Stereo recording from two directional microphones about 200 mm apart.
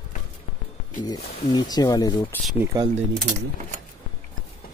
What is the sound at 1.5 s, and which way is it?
Speech, 20° left (ahead or behind).